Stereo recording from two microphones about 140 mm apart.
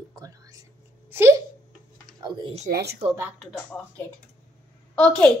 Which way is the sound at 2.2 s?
30° right (ahead or behind).